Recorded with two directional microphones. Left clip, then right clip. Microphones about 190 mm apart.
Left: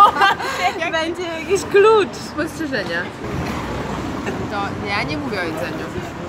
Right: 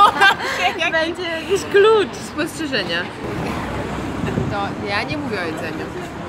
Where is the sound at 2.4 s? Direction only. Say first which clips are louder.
Right 1 dB; 15° right (ahead or behind).